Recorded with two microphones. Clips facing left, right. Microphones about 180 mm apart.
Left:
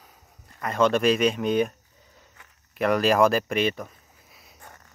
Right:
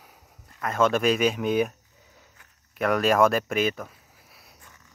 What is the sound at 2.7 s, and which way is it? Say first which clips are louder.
Speech: left 1 dB; centre (ahead or behind).